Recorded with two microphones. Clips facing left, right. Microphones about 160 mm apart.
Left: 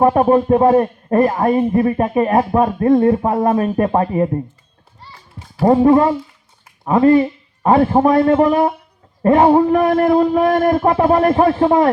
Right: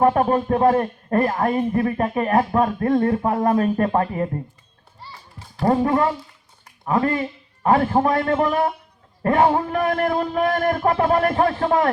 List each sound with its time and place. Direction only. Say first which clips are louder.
0.0 s a man's voice: left 5 dB; 20° left (ahead or behind)
5.6 s a man's voice: left 7 dB; 25° left (ahead or behind)